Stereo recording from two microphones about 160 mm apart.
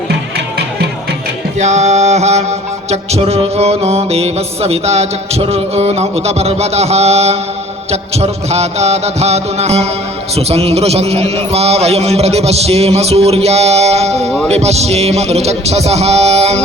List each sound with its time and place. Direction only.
1.5 s music: 45° right (ahead or behind)